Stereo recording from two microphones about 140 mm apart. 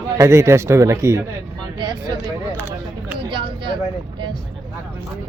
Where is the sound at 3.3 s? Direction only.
35° right (ahead or behind).